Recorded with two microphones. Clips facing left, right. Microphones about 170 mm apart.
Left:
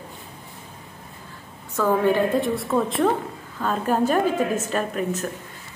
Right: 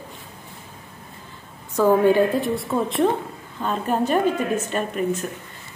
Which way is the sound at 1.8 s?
15° right (ahead or behind).